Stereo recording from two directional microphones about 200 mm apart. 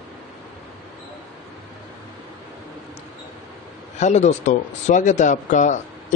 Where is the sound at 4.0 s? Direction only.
35° left (ahead or behind).